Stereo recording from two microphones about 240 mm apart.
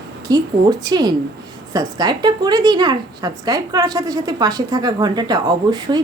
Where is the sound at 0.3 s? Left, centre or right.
Centre.